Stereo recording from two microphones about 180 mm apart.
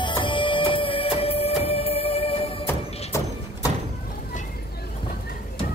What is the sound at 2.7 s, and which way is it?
Music, 15° left (ahead or behind).